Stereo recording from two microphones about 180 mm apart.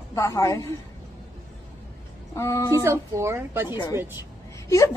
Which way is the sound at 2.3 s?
20° left (ahead or behind).